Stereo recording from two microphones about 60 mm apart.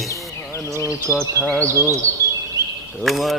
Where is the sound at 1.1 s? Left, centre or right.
Right.